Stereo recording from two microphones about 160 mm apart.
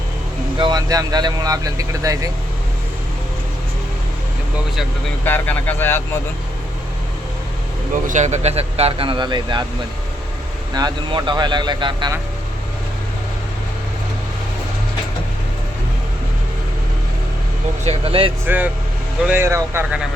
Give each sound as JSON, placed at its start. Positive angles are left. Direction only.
{"t": 0.6, "sound": "speech", "side_deg": -25}
{"t": 5.2, "sound": "speech", "side_deg": 10}
{"t": 8.0, "sound": "speech", "side_deg": -50}
{"t": 10.8, "sound": "speech", "side_deg": -25}
{"t": 17.8, "sound": "speech", "side_deg": -35}
{"t": 18.4, "sound": "speech", "side_deg": -10}